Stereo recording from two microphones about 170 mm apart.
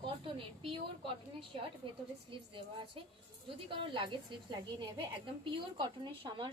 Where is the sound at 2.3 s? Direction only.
30° right (ahead or behind).